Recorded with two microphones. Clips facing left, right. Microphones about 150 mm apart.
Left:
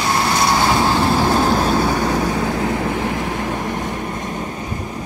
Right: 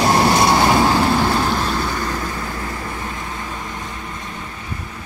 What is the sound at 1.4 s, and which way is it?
Vehicle, 45° left (ahead or behind).